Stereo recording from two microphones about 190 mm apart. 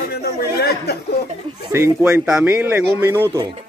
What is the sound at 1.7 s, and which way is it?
Speech, 10° right (ahead or behind).